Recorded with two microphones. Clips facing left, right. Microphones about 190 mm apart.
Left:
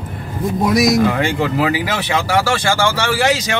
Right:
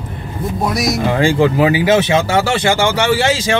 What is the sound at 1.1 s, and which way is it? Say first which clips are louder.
Speech: right 5 dB; 30° right (ahead or behind).